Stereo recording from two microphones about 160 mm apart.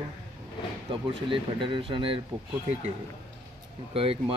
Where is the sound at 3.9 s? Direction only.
35° right (ahead or behind).